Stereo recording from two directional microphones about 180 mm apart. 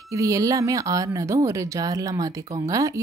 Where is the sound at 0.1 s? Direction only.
20° right (ahead or behind).